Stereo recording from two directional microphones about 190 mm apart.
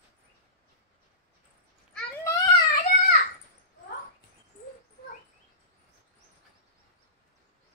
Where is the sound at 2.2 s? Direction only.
15° left (ahead or behind).